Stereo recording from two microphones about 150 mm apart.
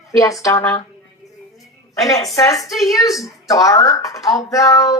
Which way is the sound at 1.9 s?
20° left (ahead or behind).